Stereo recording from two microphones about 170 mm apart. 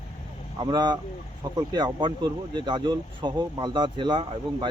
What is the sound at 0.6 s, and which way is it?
Speech, 25° right (ahead or behind).